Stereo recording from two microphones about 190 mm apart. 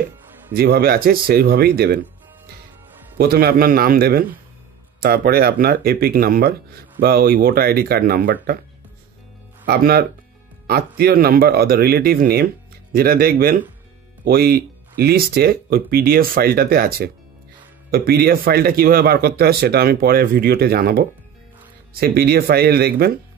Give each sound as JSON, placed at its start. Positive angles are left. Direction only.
{"t": 0.6, "sound": "speech", "side_deg": -55}
{"t": 3.2, "sound": "speech", "side_deg": -55}
{"t": 9.7, "sound": "speech", "side_deg": -55}